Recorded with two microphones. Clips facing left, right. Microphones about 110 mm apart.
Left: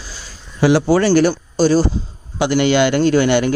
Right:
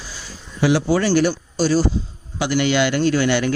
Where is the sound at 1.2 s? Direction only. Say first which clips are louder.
Left 4 dB; 45° left (ahead or behind).